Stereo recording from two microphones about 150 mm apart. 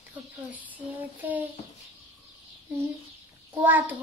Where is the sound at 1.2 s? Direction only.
10° right (ahead or behind).